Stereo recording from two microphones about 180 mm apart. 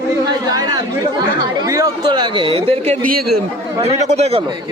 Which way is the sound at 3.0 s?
55° right (ahead or behind).